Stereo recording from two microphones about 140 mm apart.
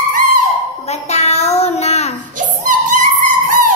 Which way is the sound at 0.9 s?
50° left (ahead or behind).